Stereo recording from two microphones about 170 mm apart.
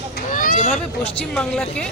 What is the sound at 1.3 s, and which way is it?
Speech, 5° left (ahead or behind).